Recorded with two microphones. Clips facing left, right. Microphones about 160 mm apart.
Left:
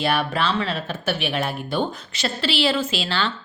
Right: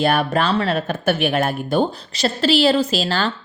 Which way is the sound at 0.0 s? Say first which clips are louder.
Right 4 dB; 45° right (ahead or behind).